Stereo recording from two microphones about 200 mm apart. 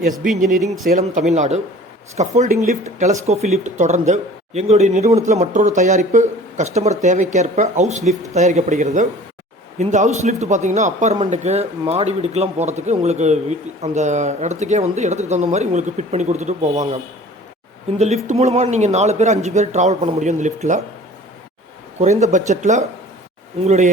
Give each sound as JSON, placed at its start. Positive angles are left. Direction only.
{"t": 0.9, "sound": "speech", "side_deg": -40}
{"t": 17.9, "sound": "speech", "side_deg": -35}
{"t": 22.2, "sound": "speech", "side_deg": -35}